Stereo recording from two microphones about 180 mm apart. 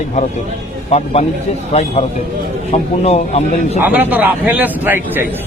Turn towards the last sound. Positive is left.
turn(degrees=-10)  # may be behind; listen again after turning